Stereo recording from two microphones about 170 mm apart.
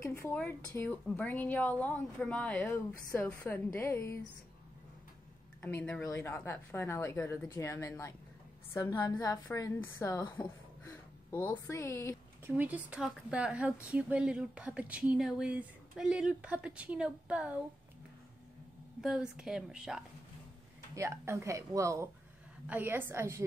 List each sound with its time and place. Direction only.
0.0 s a woman's voice: 15° left (ahead or behind)
5.6 s a woman's voice: 10° left (ahead or behind)
12.4 s speech: 10° right (ahead or behind)
18.9 s a woman's voice: 5° right (ahead or behind)
20.9 s speech: 15° right (ahead or behind)